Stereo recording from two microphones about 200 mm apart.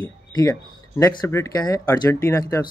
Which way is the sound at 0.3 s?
20° left (ahead or behind).